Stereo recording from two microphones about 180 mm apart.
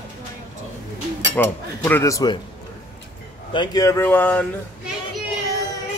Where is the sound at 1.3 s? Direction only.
10° left (ahead or behind).